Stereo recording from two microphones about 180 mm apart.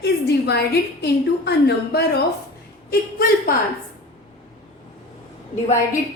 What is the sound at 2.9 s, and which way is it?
Speech, 55° left (ahead or behind).